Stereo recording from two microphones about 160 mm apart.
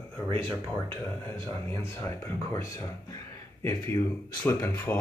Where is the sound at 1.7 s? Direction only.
15° left (ahead or behind).